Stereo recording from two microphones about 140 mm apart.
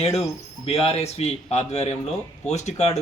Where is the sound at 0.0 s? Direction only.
45° left (ahead or behind).